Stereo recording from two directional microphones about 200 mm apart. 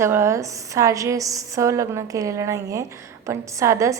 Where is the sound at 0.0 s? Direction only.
15° right (ahead or behind).